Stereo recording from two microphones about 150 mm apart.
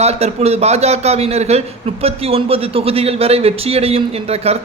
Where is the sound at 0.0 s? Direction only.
45° right (ahead or behind).